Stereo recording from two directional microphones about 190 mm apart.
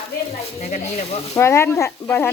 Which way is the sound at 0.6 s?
35° left (ahead or behind).